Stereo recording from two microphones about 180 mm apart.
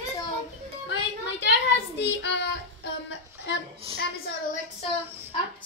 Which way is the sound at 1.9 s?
75° left (ahead or behind).